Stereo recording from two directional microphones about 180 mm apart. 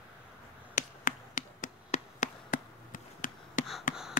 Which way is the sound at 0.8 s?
50° left (ahead or behind).